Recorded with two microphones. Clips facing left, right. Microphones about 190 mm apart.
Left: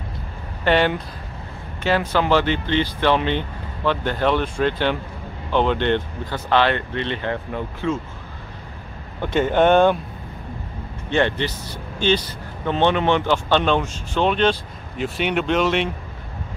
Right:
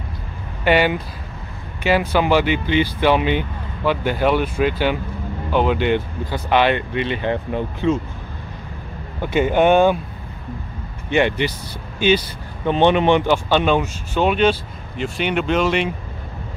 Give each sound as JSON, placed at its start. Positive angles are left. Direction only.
{"t": 0.7, "sound": "speech", "side_deg": -10}
{"t": 9.2, "sound": "speech", "side_deg": -10}
{"t": 11.1, "sound": "speech", "side_deg": -15}